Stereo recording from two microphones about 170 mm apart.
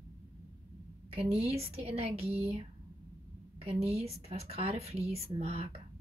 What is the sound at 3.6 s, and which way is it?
Speech, 35° right (ahead or behind).